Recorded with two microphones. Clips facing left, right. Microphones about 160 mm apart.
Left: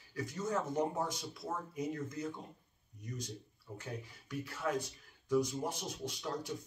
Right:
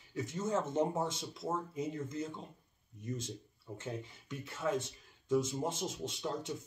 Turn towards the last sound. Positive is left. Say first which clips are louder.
# right 1 dB
turn(degrees=-25)  # may be behind; listen again after turning